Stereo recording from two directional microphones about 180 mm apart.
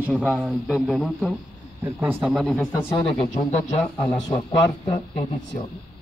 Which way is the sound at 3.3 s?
40° left (ahead or behind).